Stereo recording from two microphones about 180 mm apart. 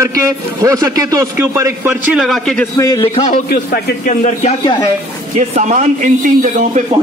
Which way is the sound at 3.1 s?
35° left (ahead or behind).